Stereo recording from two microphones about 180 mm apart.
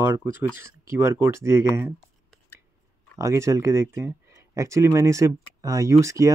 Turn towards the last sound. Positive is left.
turn(degrees=-15)  # may be behind; listen again after turning